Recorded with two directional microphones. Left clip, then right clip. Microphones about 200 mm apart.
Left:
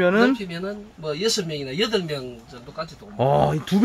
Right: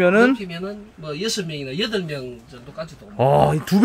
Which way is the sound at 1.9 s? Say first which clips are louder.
Left 1 dB; 10° right (ahead or behind).